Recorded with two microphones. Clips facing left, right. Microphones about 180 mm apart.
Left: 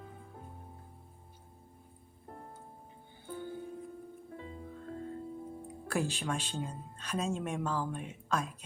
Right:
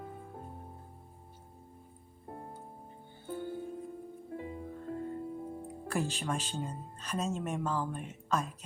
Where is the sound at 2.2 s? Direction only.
15° right (ahead or behind).